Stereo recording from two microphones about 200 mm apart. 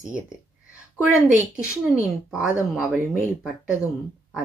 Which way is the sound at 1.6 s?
5° right (ahead or behind).